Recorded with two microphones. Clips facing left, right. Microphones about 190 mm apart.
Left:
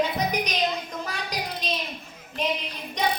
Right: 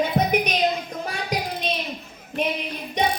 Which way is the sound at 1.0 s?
55° right (ahead or behind).